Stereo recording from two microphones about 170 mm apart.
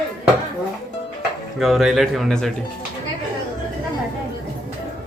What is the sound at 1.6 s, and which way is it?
Speech, centre (ahead or behind).